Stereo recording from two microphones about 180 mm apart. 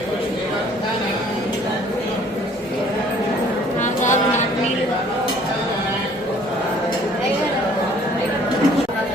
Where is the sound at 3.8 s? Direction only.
45° left (ahead or behind).